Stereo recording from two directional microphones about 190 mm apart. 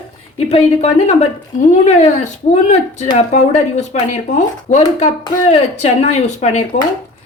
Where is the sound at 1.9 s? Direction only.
35° left (ahead or behind).